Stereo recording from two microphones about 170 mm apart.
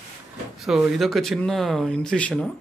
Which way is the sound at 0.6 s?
Centre (ahead or behind).